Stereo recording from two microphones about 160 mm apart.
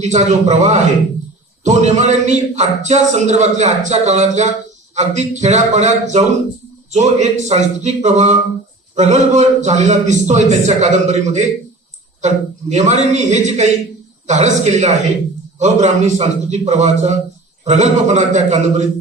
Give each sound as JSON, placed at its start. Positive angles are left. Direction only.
{"t": 0.0, "sound": "speech", "side_deg": -45}